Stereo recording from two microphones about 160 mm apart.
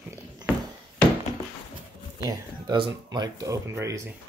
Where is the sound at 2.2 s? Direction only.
25° right (ahead or behind).